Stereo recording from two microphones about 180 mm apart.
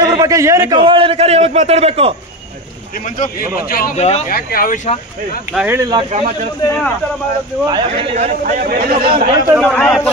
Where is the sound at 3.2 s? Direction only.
55° left (ahead or behind).